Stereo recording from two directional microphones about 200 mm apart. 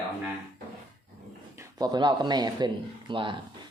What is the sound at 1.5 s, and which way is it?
Speech, 15° right (ahead or behind).